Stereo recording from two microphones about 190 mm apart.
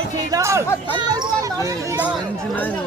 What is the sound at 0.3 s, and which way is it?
Speech, 15° right (ahead or behind).